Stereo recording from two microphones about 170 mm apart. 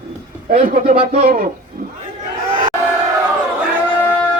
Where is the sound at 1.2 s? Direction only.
60° right (ahead or behind).